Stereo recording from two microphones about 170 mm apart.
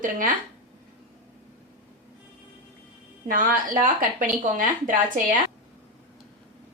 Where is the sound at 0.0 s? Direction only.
55° right (ahead or behind).